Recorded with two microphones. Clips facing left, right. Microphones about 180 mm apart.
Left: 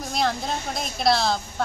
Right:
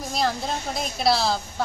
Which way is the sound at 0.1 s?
Centre (ahead or behind).